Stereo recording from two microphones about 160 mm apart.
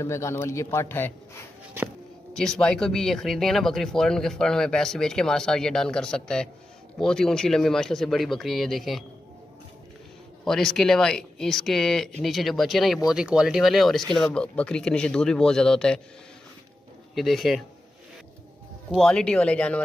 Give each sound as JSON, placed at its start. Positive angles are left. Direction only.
{"t": 0.0, "sound": "a man's voice", "side_deg": 15}
{"t": 2.3, "sound": "speech", "side_deg": 5}
{"t": 10.4, "sound": "speech", "side_deg": 0}
{"t": 17.1, "sound": "speech", "side_deg": 0}
{"t": 18.9, "sound": "speech", "side_deg": 5}